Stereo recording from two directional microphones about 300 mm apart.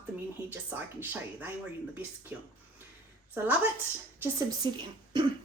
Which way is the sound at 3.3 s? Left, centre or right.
Centre.